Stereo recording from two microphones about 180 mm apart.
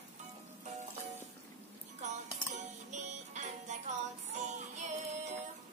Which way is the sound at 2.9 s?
40° right (ahead or behind).